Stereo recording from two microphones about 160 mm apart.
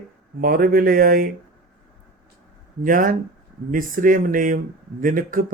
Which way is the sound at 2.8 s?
60° right (ahead or behind).